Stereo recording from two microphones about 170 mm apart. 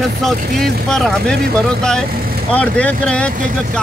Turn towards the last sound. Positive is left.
turn(degrees=5)  # may be behind; listen again after turning